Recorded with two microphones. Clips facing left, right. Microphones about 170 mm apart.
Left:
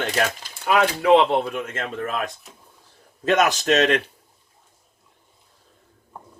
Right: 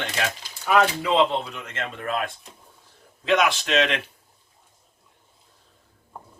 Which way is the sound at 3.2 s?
45° left (ahead or behind).